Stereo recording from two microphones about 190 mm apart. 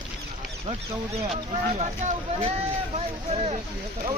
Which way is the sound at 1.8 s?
40° right (ahead or behind).